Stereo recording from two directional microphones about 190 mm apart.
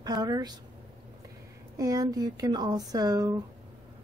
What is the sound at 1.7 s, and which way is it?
A woman's voice, 20° right (ahead or behind).